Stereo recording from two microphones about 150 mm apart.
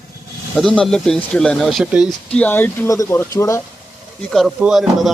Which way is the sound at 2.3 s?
10° left (ahead or behind).